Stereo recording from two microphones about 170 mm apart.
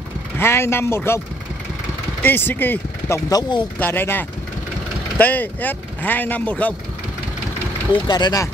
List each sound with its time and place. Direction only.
0.4 s speech: 15° left (ahead or behind)
2.2 s speech: 10° left (ahead or behind)
3.8 s speech: 10° left (ahead or behind)
7.9 s speech: 25° left (ahead or behind)